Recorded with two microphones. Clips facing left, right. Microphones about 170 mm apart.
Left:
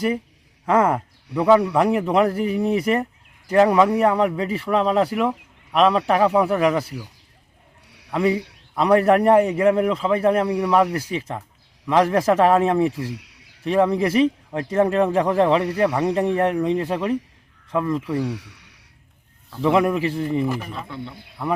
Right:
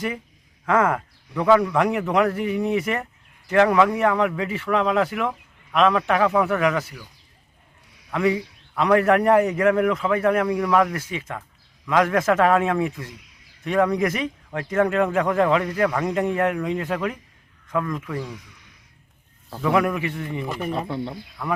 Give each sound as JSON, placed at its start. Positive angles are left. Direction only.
{"t": 0.7, "sound": "speech", "side_deg": 30}
{"t": 7.9, "sound": "a sound", "side_deg": 70}
{"t": 8.1, "sound": "speech", "side_deg": 30}
{"t": 13.1, "sound": "a sound", "side_deg": 75}
{"t": 13.7, "sound": "speech", "side_deg": 30}
{"t": 18.2, "sound": "speech", "side_deg": 75}
{"t": 19.6, "sound": "speech", "side_deg": 25}
{"t": 20.7, "sound": "speech", "side_deg": -45}